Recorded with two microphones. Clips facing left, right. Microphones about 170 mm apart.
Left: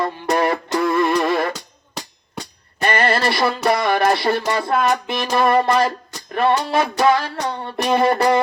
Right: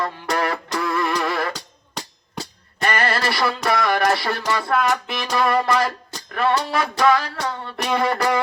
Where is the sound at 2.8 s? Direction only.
25° left (ahead or behind).